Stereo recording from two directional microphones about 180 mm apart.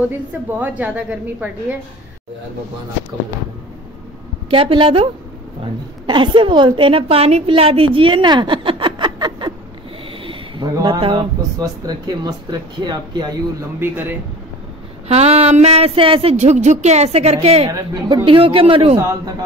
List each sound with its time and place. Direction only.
0.6 s a woman's voice: 10° right (ahead or behind)
4.5 s a woman's voice: 30° right (ahead or behind)
13.7 s a woman's voice: 10° right (ahead or behind)
15.0 s speech: 35° right (ahead or behind)
17.6 s speech: 20° right (ahead or behind)
18.9 s a woman's voice: 15° right (ahead or behind)